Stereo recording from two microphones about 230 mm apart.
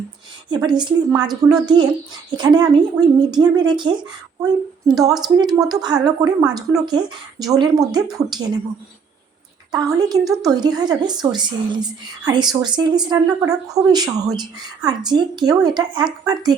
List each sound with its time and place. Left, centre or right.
0.5 s speech: centre
9.7 s speech: centre